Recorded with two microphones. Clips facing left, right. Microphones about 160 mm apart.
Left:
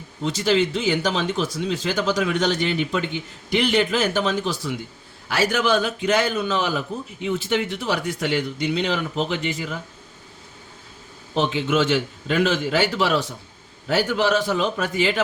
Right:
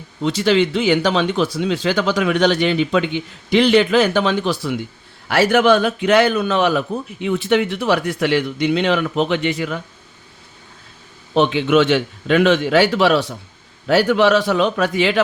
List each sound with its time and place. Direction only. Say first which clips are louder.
0.3 s a man's voice: right 4 dB; 70° right (ahead or behind)
11.3 s speech: right 6 dB; 70° right (ahead or behind)